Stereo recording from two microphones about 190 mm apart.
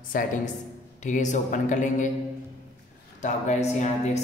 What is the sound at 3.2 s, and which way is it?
A woman's voice, 40° left (ahead or behind).